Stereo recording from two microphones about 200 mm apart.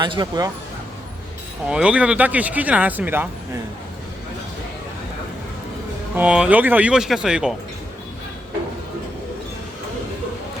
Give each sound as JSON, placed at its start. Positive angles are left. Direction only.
{"t": 0.0, "sound": "speech", "side_deg": -20}
{"t": 1.6, "sound": "speech", "side_deg": -5}
{"t": 6.1, "sound": "speech", "side_deg": -5}